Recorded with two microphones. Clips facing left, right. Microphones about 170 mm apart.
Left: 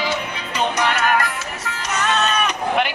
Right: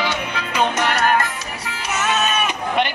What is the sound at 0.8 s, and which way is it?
Music, 35° right (ahead or behind).